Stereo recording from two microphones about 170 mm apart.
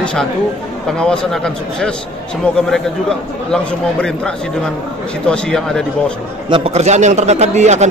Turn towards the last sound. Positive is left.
turn(degrees=-40)  # may be behind; listen again after turning